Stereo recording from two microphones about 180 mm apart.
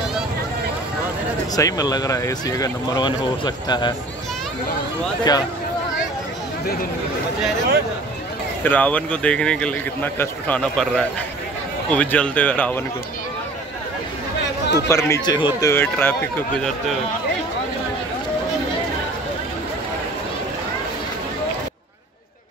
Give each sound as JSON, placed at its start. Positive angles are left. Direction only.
{"t": 1.5, "sound": "speech", "side_deg": 20}
{"t": 5.3, "sound": "speech", "side_deg": 20}
{"t": 8.6, "sound": "a man's voice", "side_deg": 10}
{"t": 14.9, "sound": "a man's voice", "side_deg": 15}
{"t": 15.7, "sound": "a man's voice", "side_deg": 10}